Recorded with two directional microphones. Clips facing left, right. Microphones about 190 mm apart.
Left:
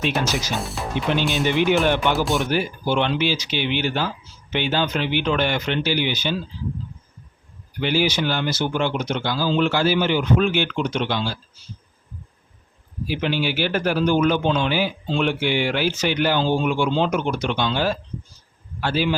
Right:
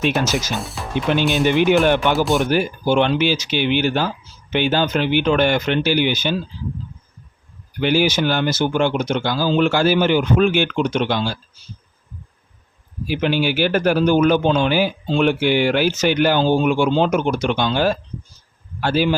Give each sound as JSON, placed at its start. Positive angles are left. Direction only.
{"t": 0.1, "sound": "speech", "side_deg": 0}
{"t": 1.5, "sound": "a man's voice", "side_deg": -55}
{"t": 2.1, "sound": "speech", "side_deg": 0}
{"t": 2.5, "sound": "a man's voice", "side_deg": -45}
{"t": 7.8, "sound": "a man's voice", "side_deg": -50}
{"t": 13.1, "sound": "a man's voice", "side_deg": -50}